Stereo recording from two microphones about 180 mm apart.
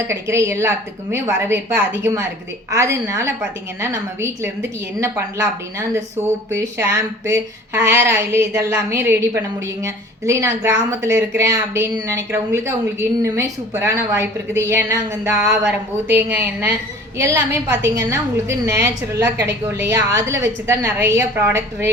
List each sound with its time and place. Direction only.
0.1 s a woman's voice: 15° right (ahead or behind)
6.5 s a woman's voice: 15° right (ahead or behind)